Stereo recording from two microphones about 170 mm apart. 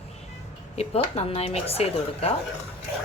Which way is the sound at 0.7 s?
35° left (ahead or behind).